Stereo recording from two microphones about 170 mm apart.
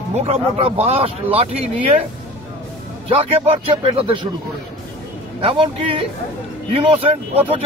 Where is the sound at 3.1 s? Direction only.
35° right (ahead or behind).